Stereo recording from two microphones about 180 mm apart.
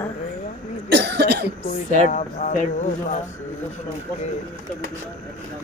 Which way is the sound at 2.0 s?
45° left (ahead or behind).